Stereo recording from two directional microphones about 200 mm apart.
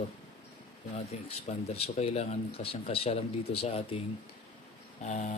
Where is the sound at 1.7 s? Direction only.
30° left (ahead or behind).